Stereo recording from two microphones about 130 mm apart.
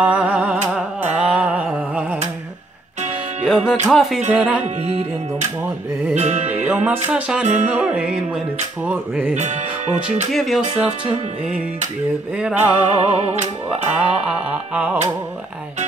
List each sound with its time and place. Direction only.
0.0 s music: 10° right (ahead or behind)
3.4 s music: 5° right (ahead or behind)
3.8 s speech: centre (ahead or behind)
4.3 s a sound: 10° right (ahead or behind)
4.8 s music: 60° right (ahead or behind)
6.5 s a sound: 15° right (ahead or behind)
9.3 s music: 60° right (ahead or behind)
10.3 s speech: centre (ahead or behind)
12.5 s music: 50° right (ahead or behind)
14.2 s a sound: 10° right (ahead or behind)